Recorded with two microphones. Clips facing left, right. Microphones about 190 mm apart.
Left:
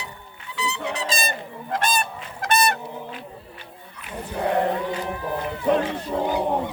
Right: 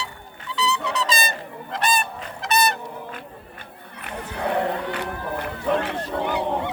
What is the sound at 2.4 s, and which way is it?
Goose, 50° left (ahead or behind).